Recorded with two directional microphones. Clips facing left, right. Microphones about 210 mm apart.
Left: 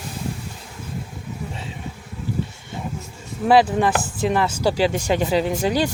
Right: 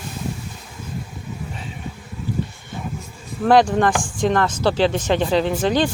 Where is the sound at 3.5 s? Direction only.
5° left (ahead or behind).